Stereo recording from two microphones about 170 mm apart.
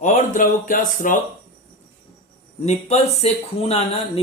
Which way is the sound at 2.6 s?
40° left (ahead or behind).